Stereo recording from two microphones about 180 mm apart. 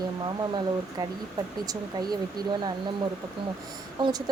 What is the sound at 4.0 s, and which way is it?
Speech, 20° right (ahead or behind).